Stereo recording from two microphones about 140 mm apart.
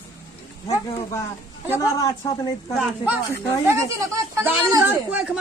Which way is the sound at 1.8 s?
25° left (ahead or behind).